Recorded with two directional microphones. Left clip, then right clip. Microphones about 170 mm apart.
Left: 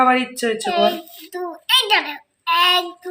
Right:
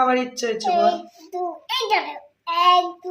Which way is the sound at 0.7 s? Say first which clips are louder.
Right 1 dB; centre (ahead or behind).